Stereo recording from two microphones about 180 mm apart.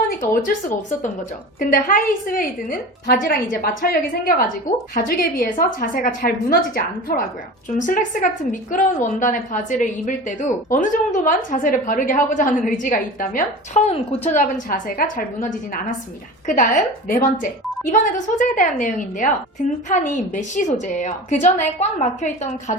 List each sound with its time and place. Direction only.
0.1 s a woman's voice: 50° left (ahead or behind)
7.8 s a woman's voice: 45° left (ahead or behind)
14.4 s a woman's voice: 55° left (ahead or behind)
16.5 s a woman's voice: 45° left (ahead or behind)